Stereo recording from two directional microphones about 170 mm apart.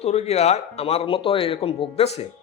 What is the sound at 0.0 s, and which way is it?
Speech, 40° left (ahead or behind).